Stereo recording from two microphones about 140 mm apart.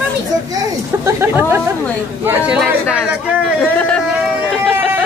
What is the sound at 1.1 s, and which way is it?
Speech, 15° right (ahead or behind).